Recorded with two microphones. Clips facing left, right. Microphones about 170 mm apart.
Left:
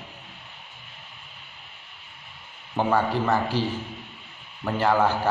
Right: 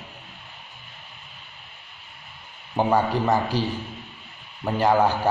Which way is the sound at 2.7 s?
15° right (ahead or behind).